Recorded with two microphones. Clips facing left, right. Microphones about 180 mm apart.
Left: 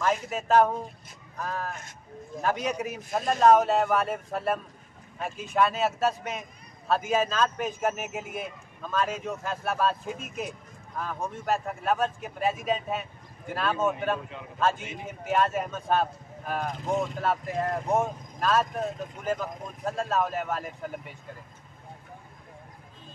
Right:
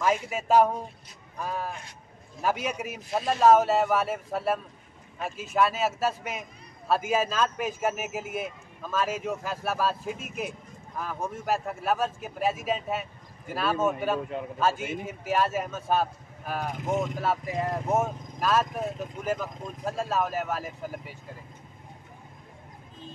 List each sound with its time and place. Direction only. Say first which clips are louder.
0.3 s a man's voice: even; 10° right (ahead or behind)
16.8 s speech: right 1 dB; 20° right (ahead or behind)
17.2 s speech: even; 5° right (ahead or behind)